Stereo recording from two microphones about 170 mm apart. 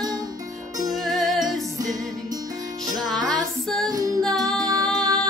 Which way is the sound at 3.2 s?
25° right (ahead or behind).